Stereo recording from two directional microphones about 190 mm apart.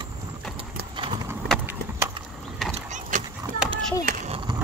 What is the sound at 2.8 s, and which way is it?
Mechanisms, 40° right (ahead or behind).